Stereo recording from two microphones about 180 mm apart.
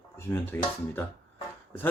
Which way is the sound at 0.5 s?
10° left (ahead or behind).